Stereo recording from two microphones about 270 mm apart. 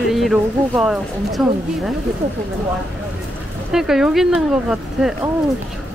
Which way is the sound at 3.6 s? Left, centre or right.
Centre.